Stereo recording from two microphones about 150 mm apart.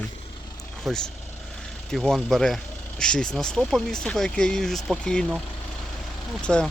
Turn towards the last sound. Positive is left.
turn(degrees=5)  # may be behind; listen again after turning